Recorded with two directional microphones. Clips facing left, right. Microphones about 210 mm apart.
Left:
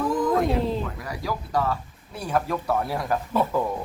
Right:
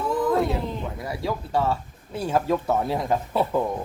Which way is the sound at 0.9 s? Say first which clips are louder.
Right 2 dB; 25° right (ahead or behind).